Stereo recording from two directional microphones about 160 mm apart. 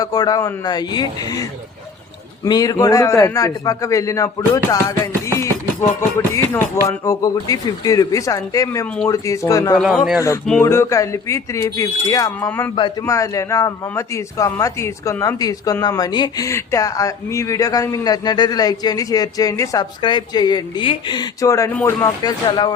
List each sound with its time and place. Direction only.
0.0 s a man's voice: 25° left (ahead or behind)
9.7 s a man's voice: centre (ahead or behind)
10.6 s a man's voice: 15° left (ahead or behind)
12.5 s a man's voice: 10° left (ahead or behind)
12.7 s a man's voice: 25° left (ahead or behind)